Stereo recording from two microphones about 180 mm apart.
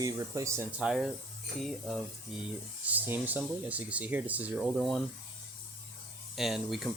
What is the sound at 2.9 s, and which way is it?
Speech, 10° right (ahead or behind).